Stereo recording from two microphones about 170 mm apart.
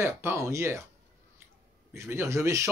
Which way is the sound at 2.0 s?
15° right (ahead or behind).